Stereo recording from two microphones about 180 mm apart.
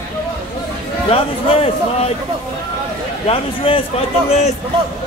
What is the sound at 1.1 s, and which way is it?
A man's voice, 30° left (ahead or behind).